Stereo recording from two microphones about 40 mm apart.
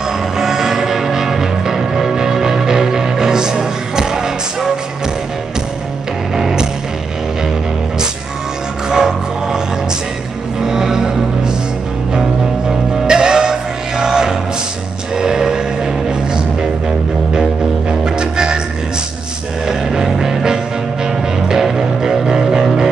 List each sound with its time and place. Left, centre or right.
0.4 s music: centre
6.3 s music: centre
8.8 s music: centre
10.6 s music: centre
12.6 s music: centre
18.0 s music: right
19.6 s music: centre